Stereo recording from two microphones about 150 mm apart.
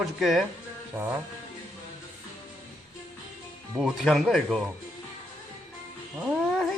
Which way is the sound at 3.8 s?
Centre (ahead or behind).